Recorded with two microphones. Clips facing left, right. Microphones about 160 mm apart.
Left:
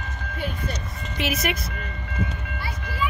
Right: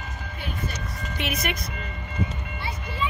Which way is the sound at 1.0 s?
Centre (ahead or behind).